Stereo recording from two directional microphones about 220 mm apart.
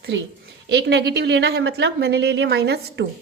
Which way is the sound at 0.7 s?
50° right (ahead or behind).